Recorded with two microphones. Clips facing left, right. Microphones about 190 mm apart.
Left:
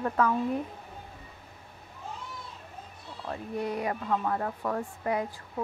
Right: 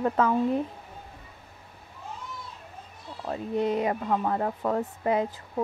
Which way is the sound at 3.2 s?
25° right (ahead or behind).